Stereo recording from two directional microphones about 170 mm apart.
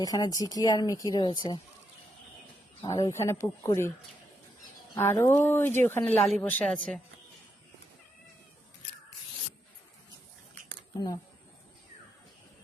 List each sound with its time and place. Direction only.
0.0 s speech: 20° left (ahead or behind)
2.8 s speech: 20° left (ahead or behind)
4.9 s a woman's voice: 15° left (ahead or behind)
10.9 s speech: 20° left (ahead or behind)